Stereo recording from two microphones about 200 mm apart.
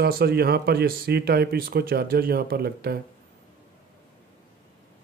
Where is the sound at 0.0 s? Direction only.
50° right (ahead or behind).